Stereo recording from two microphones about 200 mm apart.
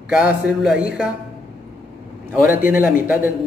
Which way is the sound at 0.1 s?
5° right (ahead or behind).